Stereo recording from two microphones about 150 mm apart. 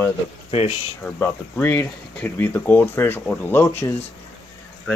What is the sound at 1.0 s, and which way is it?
Speech, 15° left (ahead or behind).